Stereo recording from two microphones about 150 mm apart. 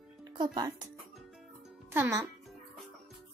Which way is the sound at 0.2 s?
30° right (ahead or behind).